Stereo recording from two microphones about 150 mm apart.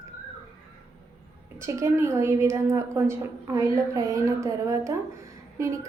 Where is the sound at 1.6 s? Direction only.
20° right (ahead or behind).